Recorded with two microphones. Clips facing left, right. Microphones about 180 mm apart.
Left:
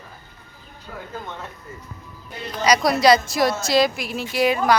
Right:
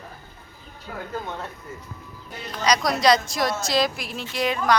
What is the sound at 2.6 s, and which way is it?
Speech, 5° left (ahead or behind).